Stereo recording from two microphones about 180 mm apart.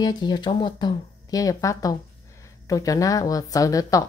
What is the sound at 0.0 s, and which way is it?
Speech, 25° left (ahead or behind).